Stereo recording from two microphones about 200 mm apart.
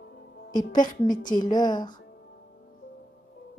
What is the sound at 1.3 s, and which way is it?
Speech, 20° left (ahead or behind).